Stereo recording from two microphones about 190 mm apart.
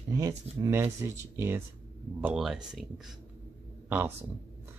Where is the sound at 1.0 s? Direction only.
15° right (ahead or behind).